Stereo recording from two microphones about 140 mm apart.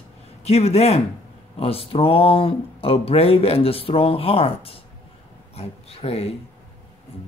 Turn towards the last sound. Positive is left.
turn(degrees=45)  # may be behind; listen again after turning